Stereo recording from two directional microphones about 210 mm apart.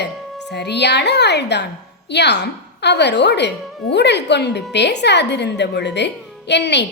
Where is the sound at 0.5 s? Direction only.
55° left (ahead or behind).